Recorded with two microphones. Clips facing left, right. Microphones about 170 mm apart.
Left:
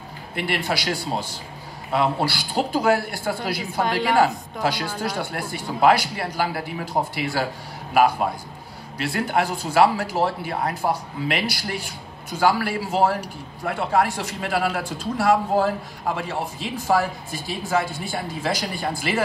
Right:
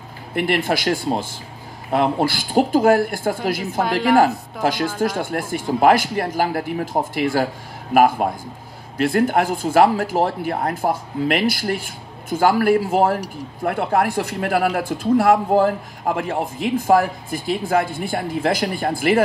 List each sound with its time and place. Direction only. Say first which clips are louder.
0.5 s speech: right 5 dB; 50° right (ahead or behind)